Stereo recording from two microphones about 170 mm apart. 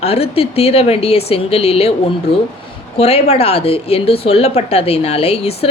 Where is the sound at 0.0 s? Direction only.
35° left (ahead or behind).